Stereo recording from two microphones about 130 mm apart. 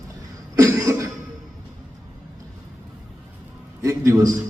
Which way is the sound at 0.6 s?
25° right (ahead or behind).